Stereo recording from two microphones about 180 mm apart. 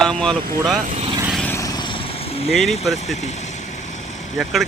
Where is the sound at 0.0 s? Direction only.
5° left (ahead or behind).